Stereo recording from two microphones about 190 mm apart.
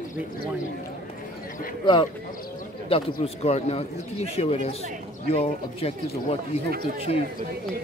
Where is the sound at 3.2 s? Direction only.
35° left (ahead or behind).